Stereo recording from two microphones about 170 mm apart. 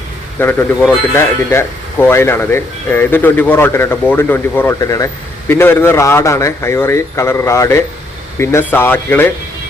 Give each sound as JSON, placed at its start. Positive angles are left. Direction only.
{"t": 0.3, "sound": "speech", "side_deg": 10}